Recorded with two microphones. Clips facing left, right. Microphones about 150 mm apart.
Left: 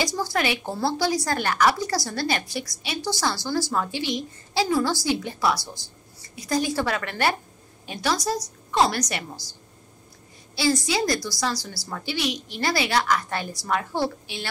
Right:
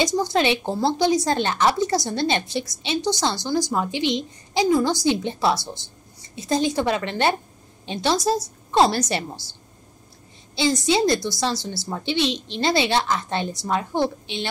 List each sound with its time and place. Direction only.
0.0 s a woman's voice: 20° right (ahead or behind)